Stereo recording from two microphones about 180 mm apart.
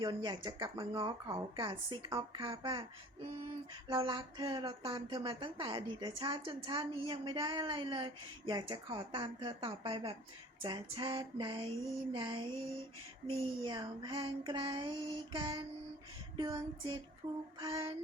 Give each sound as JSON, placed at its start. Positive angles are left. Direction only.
{"t": 0.0, "sound": "a woman's voice", "side_deg": -25}
{"t": 3.8, "sound": "a woman's voice", "side_deg": -25}
{"t": 13.7, "sound": "a woman's voice", "side_deg": -25}